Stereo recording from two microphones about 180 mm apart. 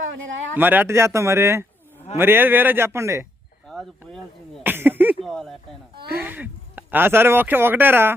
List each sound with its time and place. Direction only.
0.1 s speech: 90° right
0.5 s speech: 10° right (ahead or behind)
4.6 s a sound: 10° right (ahead or behind)
5.2 s speech: centre (ahead or behind)
6.1 s speech: 10° right (ahead or behind)